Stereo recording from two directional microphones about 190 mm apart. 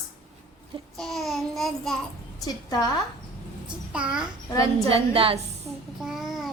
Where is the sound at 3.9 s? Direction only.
5° right (ahead or behind).